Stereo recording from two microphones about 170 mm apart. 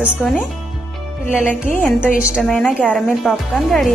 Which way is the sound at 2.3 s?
5° left (ahead or behind).